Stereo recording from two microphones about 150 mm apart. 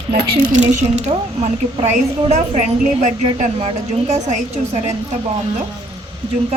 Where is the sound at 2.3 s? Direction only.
50° right (ahead or behind).